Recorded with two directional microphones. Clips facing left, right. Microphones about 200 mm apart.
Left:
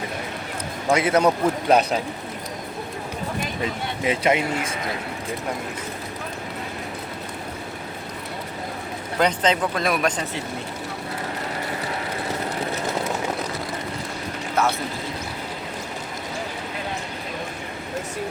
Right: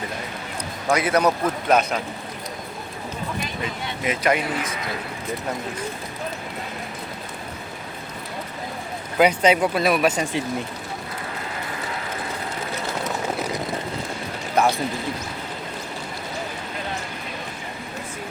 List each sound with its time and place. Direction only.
0.9 s a man's voice: 25° left (ahead or behind)
4.0 s a man's voice: 25° left (ahead or behind)
9.1 s speech: 10° right (ahead or behind)
14.6 s speech: 15° right (ahead or behind)